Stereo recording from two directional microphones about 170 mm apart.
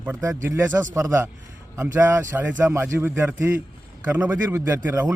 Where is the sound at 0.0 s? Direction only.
15° right (ahead or behind).